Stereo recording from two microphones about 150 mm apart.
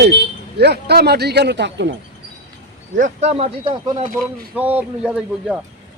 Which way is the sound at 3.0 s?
50° right (ahead or behind).